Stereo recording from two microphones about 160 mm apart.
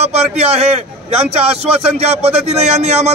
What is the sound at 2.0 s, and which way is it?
A man's voice, 40° right (ahead or behind).